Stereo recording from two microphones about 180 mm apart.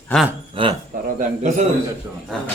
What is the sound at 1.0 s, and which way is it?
Speech, 45° right (ahead or behind).